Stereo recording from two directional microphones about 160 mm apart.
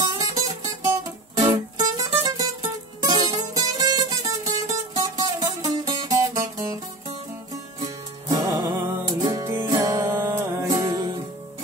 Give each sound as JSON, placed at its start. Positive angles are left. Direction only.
{"t": 0.2, "sound": "music", "side_deg": -20}
{"t": 8.3, "sound": "music", "side_deg": -25}